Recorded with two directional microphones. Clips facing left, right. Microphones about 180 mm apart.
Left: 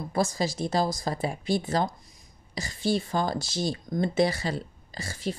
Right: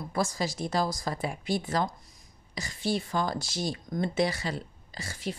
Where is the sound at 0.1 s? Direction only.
25° left (ahead or behind).